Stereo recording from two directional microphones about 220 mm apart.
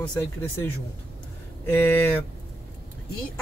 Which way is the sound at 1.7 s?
10° left (ahead or behind).